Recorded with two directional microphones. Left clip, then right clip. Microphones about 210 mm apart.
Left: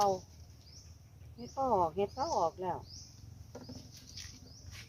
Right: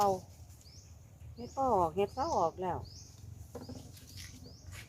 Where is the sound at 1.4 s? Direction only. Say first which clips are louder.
Right 1 dB; centre (ahead or behind).